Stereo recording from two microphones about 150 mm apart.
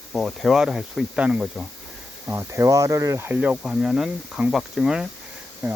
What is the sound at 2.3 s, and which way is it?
Speech, 20° right (ahead or behind).